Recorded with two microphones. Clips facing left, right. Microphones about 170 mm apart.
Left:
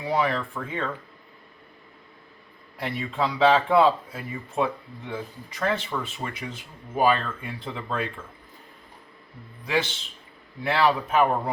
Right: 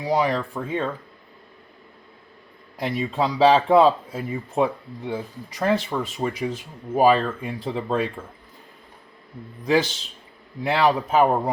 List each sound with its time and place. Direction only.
0.0 s speech: 35° right (ahead or behind)
2.8 s speech: 40° right (ahead or behind)
9.6 s speech: 40° right (ahead or behind)